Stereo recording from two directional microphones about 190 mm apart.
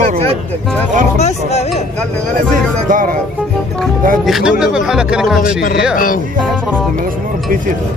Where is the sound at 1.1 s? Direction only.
35° left (ahead or behind).